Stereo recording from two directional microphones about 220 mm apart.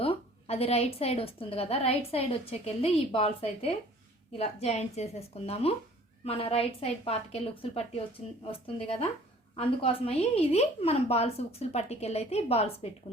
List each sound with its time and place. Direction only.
0.0 s a woman's voice: 25° left (ahead or behind)